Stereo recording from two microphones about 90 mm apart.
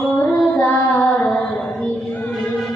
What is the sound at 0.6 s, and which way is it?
Child singing, 20° left (ahead or behind).